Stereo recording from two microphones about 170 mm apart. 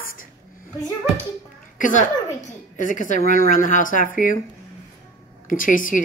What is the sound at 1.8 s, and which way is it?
A woman's voice, 50° left (ahead or behind).